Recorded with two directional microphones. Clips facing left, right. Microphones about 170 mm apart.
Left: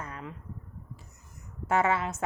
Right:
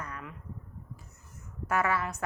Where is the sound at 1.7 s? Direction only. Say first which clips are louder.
Left 3 dB; 25° left (ahead or behind).